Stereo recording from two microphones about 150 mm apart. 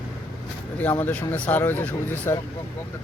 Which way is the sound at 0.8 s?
10° left (ahead or behind).